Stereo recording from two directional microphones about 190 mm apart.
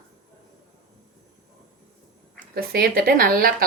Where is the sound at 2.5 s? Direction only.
55° right (ahead or behind).